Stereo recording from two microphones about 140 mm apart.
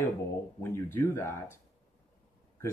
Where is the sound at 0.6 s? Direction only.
15° left (ahead or behind).